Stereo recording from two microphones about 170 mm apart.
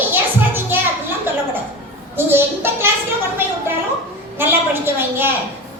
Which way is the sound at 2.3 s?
15° right (ahead or behind).